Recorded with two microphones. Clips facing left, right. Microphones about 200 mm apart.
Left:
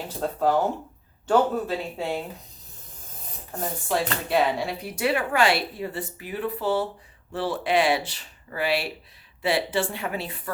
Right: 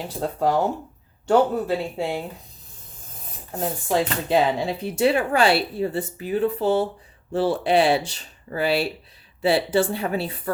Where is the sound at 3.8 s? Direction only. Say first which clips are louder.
Right 4 dB; 20° right (ahead or behind).